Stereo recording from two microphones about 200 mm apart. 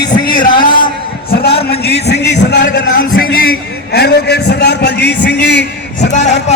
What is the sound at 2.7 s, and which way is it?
A man's voice, 45° left (ahead or behind).